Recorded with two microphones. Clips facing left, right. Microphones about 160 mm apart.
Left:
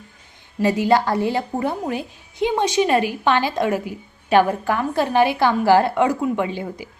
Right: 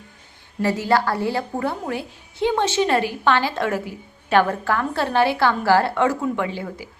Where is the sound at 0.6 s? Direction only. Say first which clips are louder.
Left 2 dB; 15° left (ahead or behind).